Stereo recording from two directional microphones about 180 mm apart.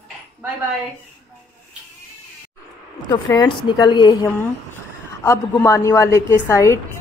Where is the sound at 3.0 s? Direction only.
25° left (ahead or behind).